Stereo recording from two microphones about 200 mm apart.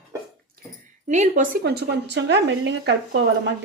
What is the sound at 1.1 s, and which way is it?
Speech, 35° right (ahead or behind).